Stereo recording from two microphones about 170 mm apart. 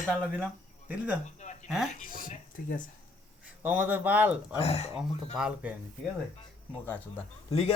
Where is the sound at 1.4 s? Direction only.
45° left (ahead or behind).